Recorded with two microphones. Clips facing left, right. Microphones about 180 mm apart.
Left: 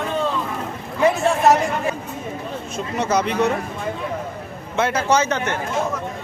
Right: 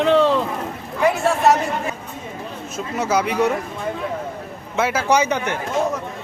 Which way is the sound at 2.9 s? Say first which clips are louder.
Even; 5° right (ahead or behind).